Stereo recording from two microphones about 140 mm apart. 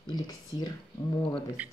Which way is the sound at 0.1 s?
30° left (ahead or behind).